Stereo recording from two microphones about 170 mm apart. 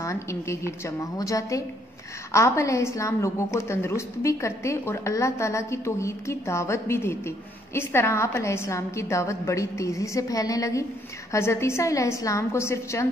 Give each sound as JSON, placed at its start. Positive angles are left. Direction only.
{"t": 0.0, "sound": "a woman's voice", "side_deg": 15}